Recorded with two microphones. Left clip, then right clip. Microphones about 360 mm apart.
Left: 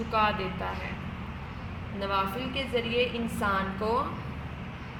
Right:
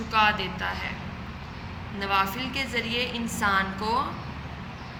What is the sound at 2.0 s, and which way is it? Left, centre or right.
A woman's voice, centre.